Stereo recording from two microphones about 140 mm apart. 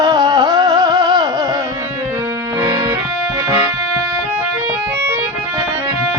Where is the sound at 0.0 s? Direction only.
25° right (ahead or behind).